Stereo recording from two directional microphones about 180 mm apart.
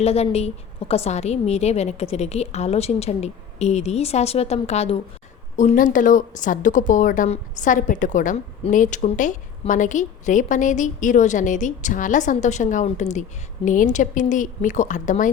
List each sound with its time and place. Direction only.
0.0 s a woman's voice: 35° left (ahead or behind)